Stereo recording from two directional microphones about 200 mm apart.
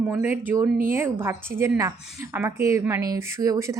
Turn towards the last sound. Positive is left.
turn(degrees=-15)  # may be behind; listen again after turning